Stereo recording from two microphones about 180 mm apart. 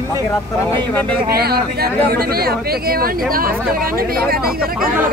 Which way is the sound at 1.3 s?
60° right (ahead or behind).